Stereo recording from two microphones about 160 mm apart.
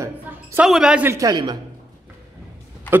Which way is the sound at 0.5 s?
5° right (ahead or behind).